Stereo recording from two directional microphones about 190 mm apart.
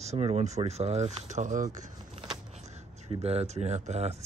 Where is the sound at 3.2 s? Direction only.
35° right (ahead or behind).